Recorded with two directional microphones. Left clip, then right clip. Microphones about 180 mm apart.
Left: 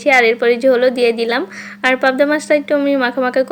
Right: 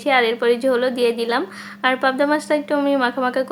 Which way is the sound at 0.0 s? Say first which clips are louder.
Left 5 dB; 15° left (ahead or behind).